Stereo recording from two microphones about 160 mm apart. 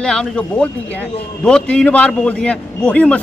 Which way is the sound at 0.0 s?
5° left (ahead or behind).